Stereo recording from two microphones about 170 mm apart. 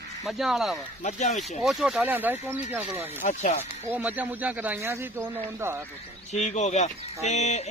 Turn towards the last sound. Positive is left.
turn(degrees=40)  # may be behind; listen again after turning